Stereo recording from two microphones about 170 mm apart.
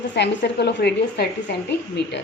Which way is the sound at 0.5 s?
75° left (ahead or behind).